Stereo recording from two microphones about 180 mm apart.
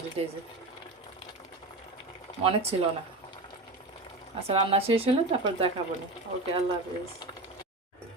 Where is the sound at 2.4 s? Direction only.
35° right (ahead or behind).